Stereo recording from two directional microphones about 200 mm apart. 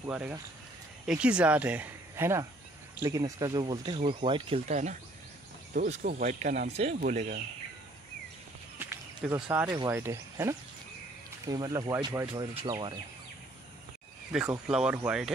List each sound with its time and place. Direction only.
0.0 s speech: 10° right (ahead or behind); by 7.3 s 35° right (ahead or behind)
8.7 s a sound: 10° right (ahead or behind)
9.7 s speech: 20° right (ahead or behind)
14.3 s speech: 5° right (ahead or behind)